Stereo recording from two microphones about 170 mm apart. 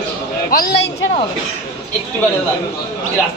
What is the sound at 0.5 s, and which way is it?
Speech, 60° left (ahead or behind).